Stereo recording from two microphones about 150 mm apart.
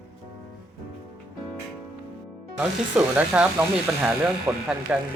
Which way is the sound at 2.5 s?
5° right (ahead or behind).